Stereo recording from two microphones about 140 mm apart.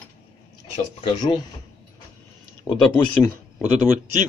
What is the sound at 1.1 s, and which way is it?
Speech, 35° left (ahead or behind).